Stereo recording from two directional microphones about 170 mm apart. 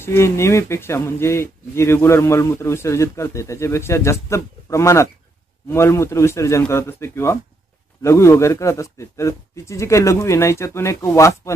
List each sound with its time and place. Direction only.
0.0 s speech: 15° left (ahead or behind)